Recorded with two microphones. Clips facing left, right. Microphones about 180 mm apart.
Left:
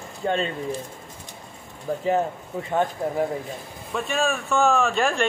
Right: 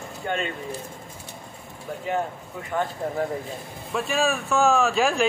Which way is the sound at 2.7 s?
20° left (ahead or behind).